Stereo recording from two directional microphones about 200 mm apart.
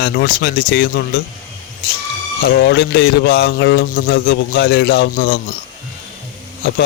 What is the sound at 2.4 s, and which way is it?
Speech, 55° left (ahead or behind).